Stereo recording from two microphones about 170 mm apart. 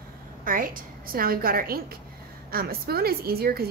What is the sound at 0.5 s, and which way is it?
A woman's voice, 55° right (ahead or behind).